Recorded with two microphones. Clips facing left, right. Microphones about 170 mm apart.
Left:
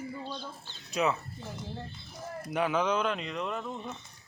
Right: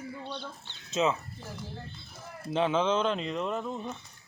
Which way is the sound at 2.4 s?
25° right (ahead or behind).